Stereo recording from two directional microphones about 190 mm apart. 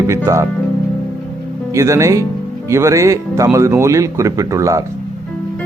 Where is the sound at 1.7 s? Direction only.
15° right (ahead or behind).